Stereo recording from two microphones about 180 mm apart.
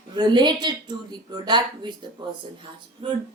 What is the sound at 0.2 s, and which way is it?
A woman's voice, 25° right (ahead or behind).